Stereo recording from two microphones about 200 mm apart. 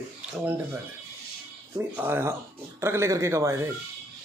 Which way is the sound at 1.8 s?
10° right (ahead or behind).